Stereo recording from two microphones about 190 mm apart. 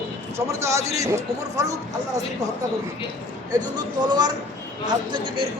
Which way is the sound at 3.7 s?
20° right (ahead or behind).